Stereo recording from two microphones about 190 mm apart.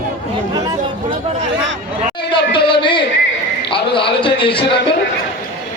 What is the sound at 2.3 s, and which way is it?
Speech, 25° left (ahead or behind).